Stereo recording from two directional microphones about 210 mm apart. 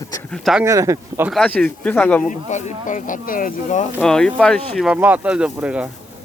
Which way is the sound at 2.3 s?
35° left (ahead or behind).